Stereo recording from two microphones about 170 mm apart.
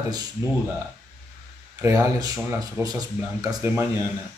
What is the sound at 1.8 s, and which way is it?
Speech, 15° right (ahead or behind).